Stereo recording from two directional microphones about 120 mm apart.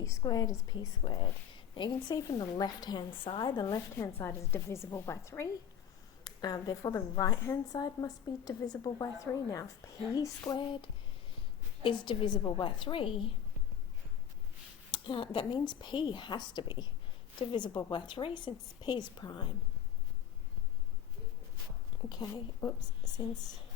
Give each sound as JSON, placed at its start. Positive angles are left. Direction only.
{"t": 0.0, "sound": "a woman's voice", "side_deg": 30}
{"t": 3.9, "sound": "a woman's voice", "side_deg": 20}
{"t": 6.2, "sound": "a woman's voice", "side_deg": 35}
{"t": 11.8, "sound": "a woman's voice", "side_deg": 40}
{"t": 14.8, "sound": "a woman's voice", "side_deg": 40}
{"t": 22.1, "sound": "a woman's voice", "side_deg": 35}